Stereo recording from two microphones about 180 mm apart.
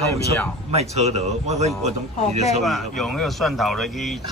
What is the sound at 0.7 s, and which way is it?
Speech, 35° right (ahead or behind).